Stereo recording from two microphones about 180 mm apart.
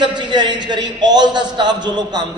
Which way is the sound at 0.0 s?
25° right (ahead or behind).